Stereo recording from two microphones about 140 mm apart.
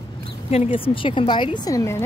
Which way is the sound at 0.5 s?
45° left (ahead or behind).